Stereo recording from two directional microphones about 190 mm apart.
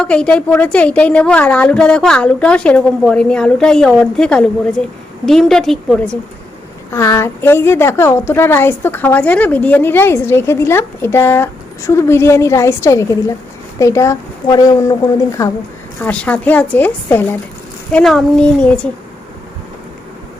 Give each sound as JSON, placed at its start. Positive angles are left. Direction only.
{"t": 0.0, "sound": "a woman's voice", "side_deg": 5}
{"t": 6.9, "sound": "a woman's voice", "side_deg": 15}